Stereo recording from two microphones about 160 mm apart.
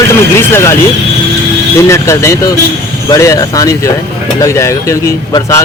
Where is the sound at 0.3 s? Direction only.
15° left (ahead or behind).